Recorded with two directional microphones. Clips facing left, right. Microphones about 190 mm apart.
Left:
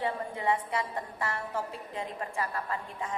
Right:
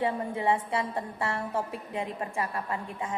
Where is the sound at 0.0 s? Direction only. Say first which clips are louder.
Right 3 dB; 25° right (ahead or behind).